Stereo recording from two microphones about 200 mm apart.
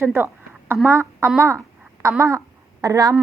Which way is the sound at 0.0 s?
10° right (ahead or behind).